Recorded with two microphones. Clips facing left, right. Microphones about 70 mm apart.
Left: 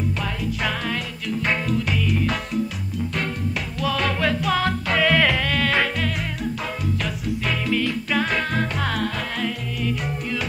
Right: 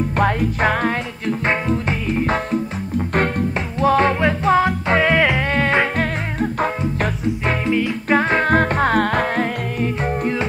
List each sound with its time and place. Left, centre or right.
0.2 s music: right